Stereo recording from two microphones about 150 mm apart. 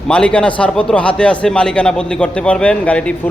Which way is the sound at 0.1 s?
5° left (ahead or behind).